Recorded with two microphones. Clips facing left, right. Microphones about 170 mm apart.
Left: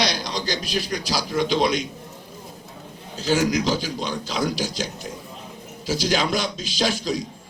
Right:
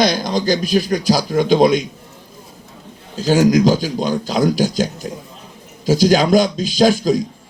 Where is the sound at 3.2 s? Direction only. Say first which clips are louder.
Right 8 dB; 40° right (ahead or behind).